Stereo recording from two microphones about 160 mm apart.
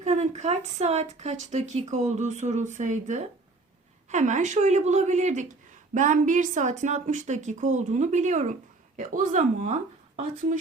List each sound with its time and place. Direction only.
0.0 s speech: 45° right (ahead or behind)